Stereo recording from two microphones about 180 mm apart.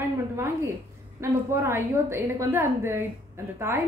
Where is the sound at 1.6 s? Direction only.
15° right (ahead or behind).